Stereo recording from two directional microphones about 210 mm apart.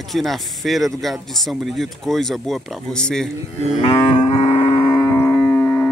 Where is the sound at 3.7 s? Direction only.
25° left (ahead or behind).